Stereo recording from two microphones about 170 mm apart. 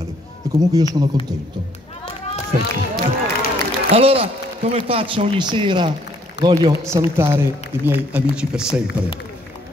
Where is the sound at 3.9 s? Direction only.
35° right (ahead or behind); by 8.8 s 5° right (ahead or behind).